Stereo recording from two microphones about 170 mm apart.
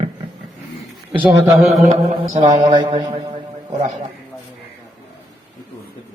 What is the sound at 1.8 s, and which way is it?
Speech, 40° right (ahead or behind).